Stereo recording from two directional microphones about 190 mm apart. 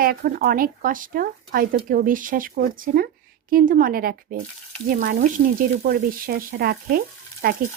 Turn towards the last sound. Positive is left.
turn(degrees=-50)  # may be behind; listen again after turning